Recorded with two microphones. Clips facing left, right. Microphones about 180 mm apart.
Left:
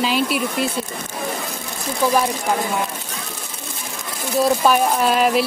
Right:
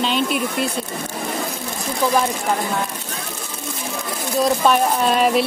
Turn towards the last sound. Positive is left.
turn(degrees=0)  # may be behind; listen again after turning